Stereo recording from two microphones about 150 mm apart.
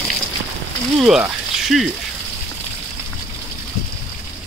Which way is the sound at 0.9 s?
5° right (ahead or behind).